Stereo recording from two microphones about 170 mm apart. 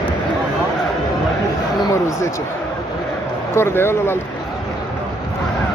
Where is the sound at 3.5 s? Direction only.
15° left (ahead or behind).